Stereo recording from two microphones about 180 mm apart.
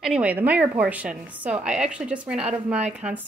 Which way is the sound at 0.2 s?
10° right (ahead or behind).